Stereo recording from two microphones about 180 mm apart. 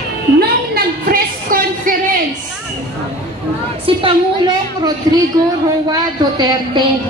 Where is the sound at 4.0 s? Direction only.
25° right (ahead or behind).